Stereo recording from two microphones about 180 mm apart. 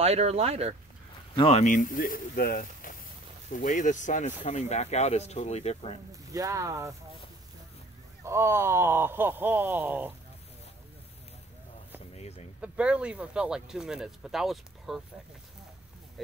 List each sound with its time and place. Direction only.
0.0 s speech: 35° right (ahead or behind)
1.3 s speech: 35° left (ahead or behind)
6.3 s speech: 20° right (ahead or behind)
8.2 s speech: 15° right (ahead or behind)
12.1 s a sound: 35° left (ahead or behind)
12.5 s speech: 5° right (ahead or behind)